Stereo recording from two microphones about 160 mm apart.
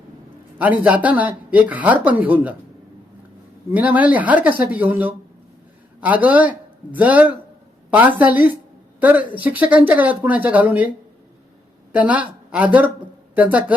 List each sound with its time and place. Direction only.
0.6 s speech: 10° right (ahead or behind)
3.7 s speech: 10° right (ahead or behind)
11.9 s speech: 10° right (ahead or behind)